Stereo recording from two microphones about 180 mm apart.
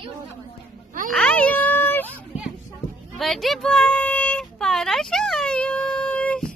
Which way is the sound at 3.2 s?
Centre (ahead or behind).